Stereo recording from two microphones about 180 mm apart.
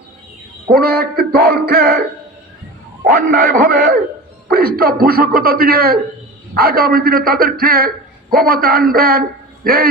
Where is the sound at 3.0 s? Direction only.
55° right (ahead or behind).